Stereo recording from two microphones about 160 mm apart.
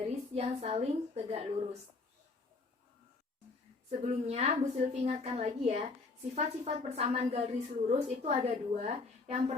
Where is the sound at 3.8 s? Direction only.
45° right (ahead or behind).